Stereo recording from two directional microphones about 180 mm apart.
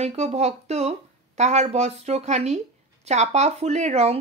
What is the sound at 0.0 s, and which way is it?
Speech, 35° right (ahead or behind).